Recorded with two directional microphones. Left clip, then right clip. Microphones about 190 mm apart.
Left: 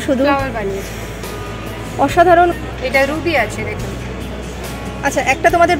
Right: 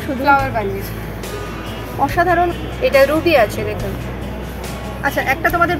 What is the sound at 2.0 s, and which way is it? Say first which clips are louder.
Speech: left 5 dB; 40° left (ahead or behind).